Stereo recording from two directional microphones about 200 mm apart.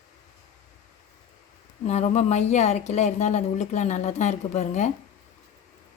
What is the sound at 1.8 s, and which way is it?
Speech, 35° left (ahead or behind).